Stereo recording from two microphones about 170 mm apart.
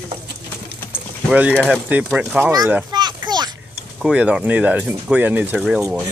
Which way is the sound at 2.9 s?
25° right (ahead or behind).